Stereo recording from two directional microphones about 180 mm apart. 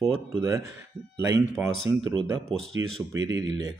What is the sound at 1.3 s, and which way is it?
Speech, 15° right (ahead or behind).